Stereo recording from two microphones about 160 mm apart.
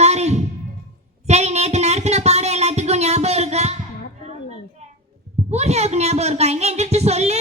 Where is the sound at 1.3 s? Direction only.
45° right (ahead or behind).